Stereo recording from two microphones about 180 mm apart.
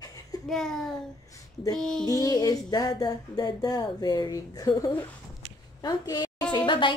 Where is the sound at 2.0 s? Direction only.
20° left (ahead or behind).